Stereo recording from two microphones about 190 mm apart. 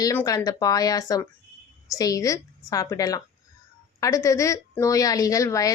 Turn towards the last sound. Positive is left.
turn(degrees=15)  # may be behind; listen again after turning